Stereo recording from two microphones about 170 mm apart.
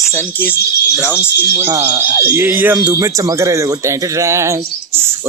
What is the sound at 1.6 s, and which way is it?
Speech, 15° right (ahead or behind).